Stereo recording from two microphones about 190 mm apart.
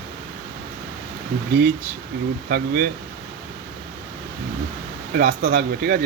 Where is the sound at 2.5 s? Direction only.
50° right (ahead or behind).